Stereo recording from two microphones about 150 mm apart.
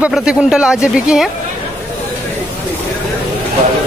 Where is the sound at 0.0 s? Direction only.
5° right (ahead or behind).